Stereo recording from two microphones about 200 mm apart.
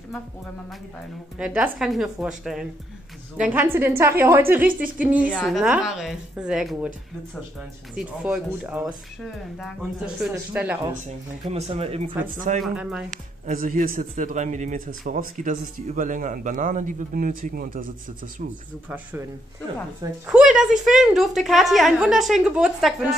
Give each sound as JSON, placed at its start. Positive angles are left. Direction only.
{"t": 0.7, "sound": "a woman's voice", "side_deg": 0}
{"t": 7.9, "sound": "a woman's voice", "side_deg": -5}
{"t": 11.4, "sound": "speech", "side_deg": -30}
{"t": 12.6, "sound": "speech", "side_deg": -5}
{"t": 13.5, "sound": "a man's voice", "side_deg": -45}
{"t": 20.2, "sound": "speech", "side_deg": -5}